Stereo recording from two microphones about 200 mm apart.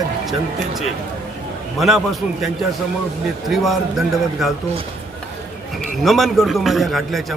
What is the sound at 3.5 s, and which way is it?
A man's voice, centre (ahead or behind).